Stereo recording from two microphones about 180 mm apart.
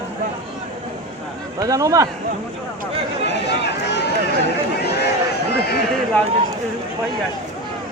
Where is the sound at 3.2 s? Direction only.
70° left (ahead or behind).